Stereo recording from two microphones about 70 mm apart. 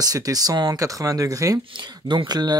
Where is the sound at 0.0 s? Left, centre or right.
Right.